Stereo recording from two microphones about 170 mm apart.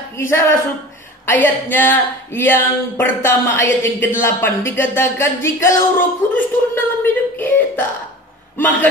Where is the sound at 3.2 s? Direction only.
10° left (ahead or behind).